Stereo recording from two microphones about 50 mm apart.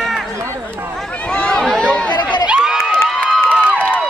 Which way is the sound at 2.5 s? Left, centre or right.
Centre.